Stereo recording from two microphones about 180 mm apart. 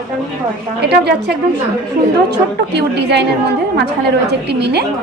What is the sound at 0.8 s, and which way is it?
Speech, 70° right (ahead or behind).